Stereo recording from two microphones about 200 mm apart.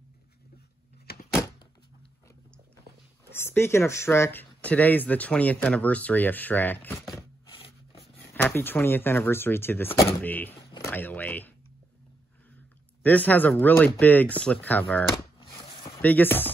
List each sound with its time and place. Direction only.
1.1 s door: 50° left (ahead or behind)
3.3 s speech: 10° left (ahead or behind); by 8.1 s 30° left (ahead or behind)
8.2 s speech: 10° left (ahead or behind)
10.7 s a sound: 15° left (ahead or behind)
13.0 s speech: 10° left (ahead or behind)
15.4 s a sound: 25° left (ahead or behind)
16.0 s speech: 10° left (ahead or behind)